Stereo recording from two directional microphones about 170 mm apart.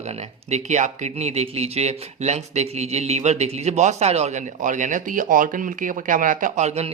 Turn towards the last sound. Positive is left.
turn(degrees=-40)  # may be behind; listen again after turning